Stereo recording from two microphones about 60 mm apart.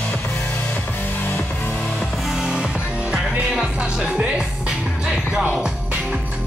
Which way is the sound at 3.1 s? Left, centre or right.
Centre.